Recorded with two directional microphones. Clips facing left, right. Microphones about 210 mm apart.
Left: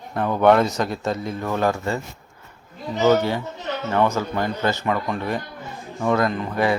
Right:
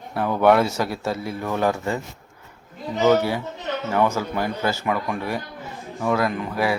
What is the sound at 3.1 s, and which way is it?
Speech, 10° right (ahead or behind).